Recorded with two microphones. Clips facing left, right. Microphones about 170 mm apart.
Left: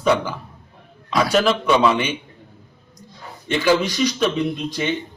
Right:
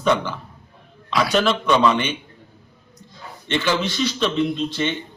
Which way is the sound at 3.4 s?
10° left (ahead or behind).